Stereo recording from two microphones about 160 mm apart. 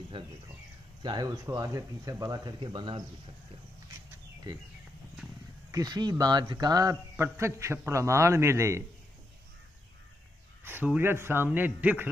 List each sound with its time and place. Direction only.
0.2 s speech: 30° right (ahead or behind)
5.7 s speech: 25° right (ahead or behind)
10.6 s speech: 10° right (ahead or behind)